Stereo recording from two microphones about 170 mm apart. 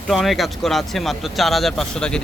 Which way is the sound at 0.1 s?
Centre (ahead or behind).